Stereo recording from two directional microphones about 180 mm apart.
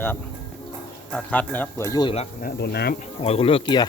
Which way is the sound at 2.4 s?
60° left (ahead or behind).